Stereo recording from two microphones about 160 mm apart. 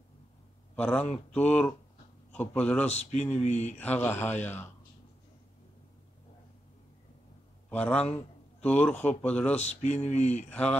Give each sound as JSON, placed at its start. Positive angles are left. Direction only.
{"t": 0.7, "sound": "speech", "side_deg": 10}
{"t": 2.9, "sound": "speech", "side_deg": 45}
{"t": 3.7, "sound": "speech", "side_deg": 10}
{"t": 7.7, "sound": "speech", "side_deg": 5}
{"t": 9.6, "sound": "speech", "side_deg": 45}
{"t": 10.5, "sound": "speech", "side_deg": 5}